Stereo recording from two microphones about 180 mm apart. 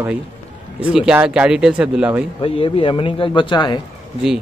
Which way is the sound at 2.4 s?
30° left (ahead or behind).